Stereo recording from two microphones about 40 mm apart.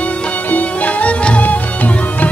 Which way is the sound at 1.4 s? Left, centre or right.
Left.